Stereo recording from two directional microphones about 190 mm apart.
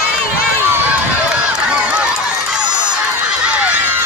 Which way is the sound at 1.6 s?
5° right (ahead or behind).